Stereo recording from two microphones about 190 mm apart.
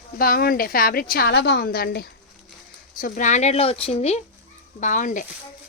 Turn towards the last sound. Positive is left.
turn(degrees=40)  # may be behind; listen again after turning